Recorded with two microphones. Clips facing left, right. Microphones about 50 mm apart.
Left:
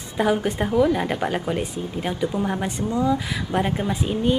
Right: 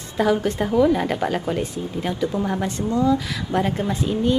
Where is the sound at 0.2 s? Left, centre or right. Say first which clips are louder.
Right 1 dB; centre.